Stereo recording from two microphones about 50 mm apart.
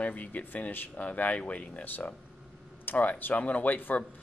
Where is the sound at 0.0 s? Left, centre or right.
Left.